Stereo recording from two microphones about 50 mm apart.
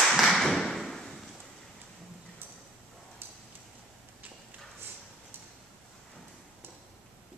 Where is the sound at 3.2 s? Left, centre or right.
Right.